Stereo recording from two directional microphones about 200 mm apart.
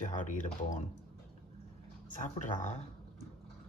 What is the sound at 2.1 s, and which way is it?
Speech, 40° left (ahead or behind).